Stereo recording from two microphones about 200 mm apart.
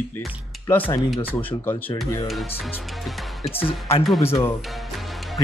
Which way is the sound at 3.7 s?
30° left (ahead or behind).